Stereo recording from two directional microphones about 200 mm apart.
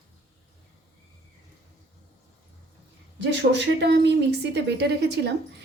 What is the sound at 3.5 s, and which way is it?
A woman's voice, 60° right (ahead or behind).